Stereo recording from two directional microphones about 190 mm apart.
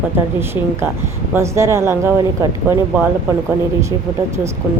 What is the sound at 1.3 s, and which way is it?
A woman's voice, 15° right (ahead or behind).